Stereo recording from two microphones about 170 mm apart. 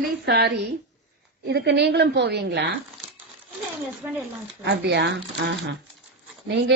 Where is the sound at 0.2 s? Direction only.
75° right (ahead or behind).